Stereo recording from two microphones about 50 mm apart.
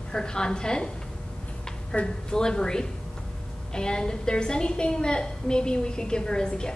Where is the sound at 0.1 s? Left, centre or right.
Centre.